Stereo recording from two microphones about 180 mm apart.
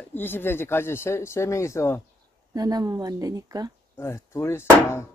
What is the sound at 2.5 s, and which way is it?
A woman's voice, 20° right (ahead or behind).